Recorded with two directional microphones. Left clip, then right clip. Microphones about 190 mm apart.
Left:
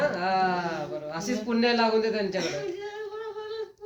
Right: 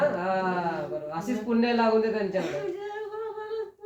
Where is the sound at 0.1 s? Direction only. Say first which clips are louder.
Left 2 dB; 15° right (ahead or behind).